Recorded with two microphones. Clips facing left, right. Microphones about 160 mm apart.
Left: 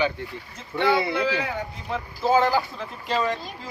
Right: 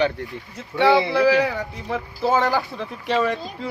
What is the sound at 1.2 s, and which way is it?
Speech, 75° right (ahead or behind).